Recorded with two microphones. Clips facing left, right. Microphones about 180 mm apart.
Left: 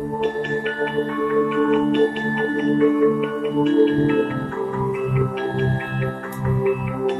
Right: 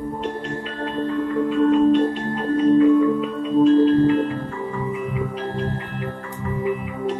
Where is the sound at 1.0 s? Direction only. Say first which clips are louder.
Right 1 dB; 65° left (ahead or behind).